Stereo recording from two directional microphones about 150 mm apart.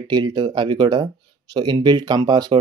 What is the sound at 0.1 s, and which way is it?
Speech, 30° right (ahead or behind).